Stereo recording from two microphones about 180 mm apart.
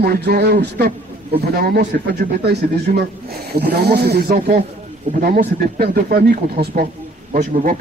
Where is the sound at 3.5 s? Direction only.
65° right (ahead or behind).